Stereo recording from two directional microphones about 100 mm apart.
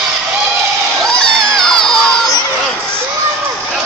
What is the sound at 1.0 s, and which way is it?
Crowd, 5° left (ahead or behind).